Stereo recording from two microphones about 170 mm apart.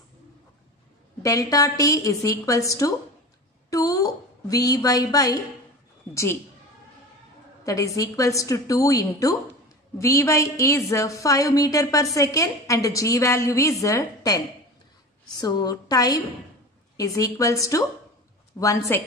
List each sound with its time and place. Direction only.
1.2 s a woman's voice: 20° left (ahead or behind)
7.6 s a woman's voice: 20° left (ahead or behind)